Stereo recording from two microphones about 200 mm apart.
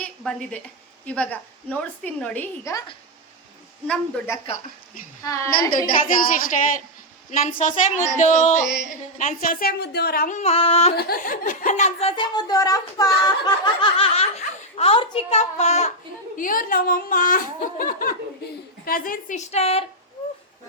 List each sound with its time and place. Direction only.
0.2 s a woman's voice: 5° left (ahead or behind)
3.8 s speech: 5° left (ahead or behind)
5.2 s a woman's voice: 15° left (ahead or behind)
5.5 s a woman's voice: 45° left (ahead or behind)
10.9 s a woman's voice: 45° left (ahead or behind)
16.4 s a woman's voice: 45° left (ahead or behind)